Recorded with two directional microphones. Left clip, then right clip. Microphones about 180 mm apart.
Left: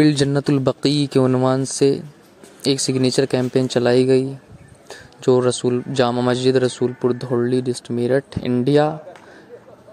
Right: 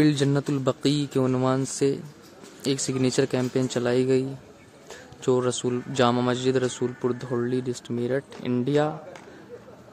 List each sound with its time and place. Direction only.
0.0 s a man's voice: 35° left (ahead or behind)